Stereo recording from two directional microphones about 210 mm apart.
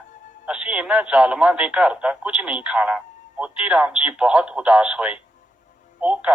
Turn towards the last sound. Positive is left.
turn(degrees=-5)  # may be behind; listen again after turning